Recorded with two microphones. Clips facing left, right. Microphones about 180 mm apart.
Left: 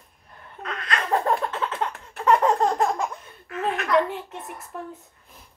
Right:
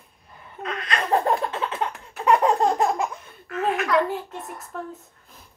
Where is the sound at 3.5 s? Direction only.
Centre (ahead or behind).